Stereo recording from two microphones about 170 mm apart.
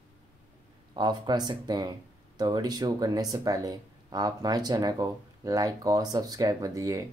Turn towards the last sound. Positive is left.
turn(degrees=-20)  # may be behind; listen again after turning